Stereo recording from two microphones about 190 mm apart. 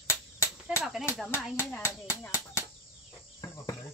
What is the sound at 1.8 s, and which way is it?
Speech, 15° left (ahead or behind).